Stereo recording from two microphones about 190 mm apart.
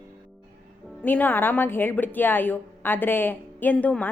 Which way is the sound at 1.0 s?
10° left (ahead or behind).